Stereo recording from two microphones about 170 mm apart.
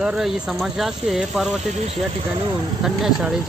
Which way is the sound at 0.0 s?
Centre (ahead or behind).